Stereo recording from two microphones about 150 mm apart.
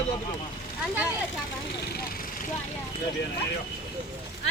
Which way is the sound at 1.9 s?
85° left.